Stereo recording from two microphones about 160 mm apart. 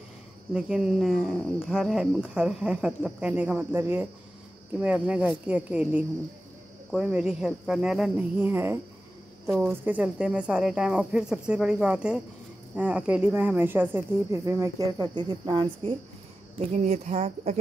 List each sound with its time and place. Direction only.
0.5 s speech: 5° right (ahead or behind); by 15.9 s 30° right (ahead or behind)
16.5 s speech: 45° right (ahead or behind)